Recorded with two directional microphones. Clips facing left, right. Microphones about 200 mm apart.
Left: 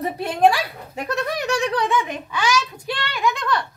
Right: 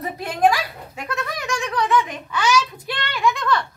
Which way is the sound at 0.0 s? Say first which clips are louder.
Left 2 dB; 30° left (ahead or behind).